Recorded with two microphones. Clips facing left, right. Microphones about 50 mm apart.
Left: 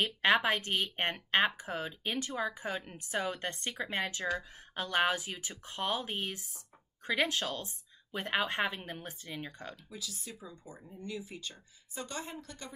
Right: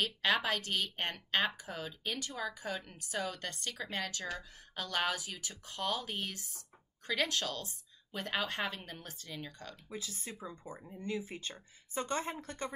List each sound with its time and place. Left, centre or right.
0.0 s a woman's voice: left
9.8 s speech: right